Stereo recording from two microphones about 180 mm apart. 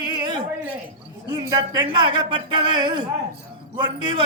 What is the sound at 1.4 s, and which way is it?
A man's voice, 20° right (ahead or behind).